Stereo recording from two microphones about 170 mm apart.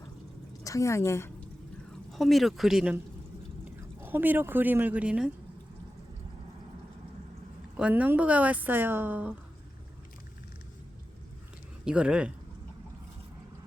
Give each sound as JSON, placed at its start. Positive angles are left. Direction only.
{"t": 0.6, "sound": "a woman's voice", "side_deg": 20}
{"t": 1.9, "sound": "a woman's voice", "side_deg": 0}
{"t": 4.0, "sound": "a woman's voice", "side_deg": -10}
{"t": 7.8, "sound": "a woman's voice", "side_deg": -10}
{"t": 11.9, "sound": "speech", "side_deg": -5}